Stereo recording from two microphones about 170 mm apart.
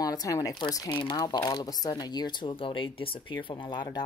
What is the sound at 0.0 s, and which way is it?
Speech, 20° left (ahead or behind).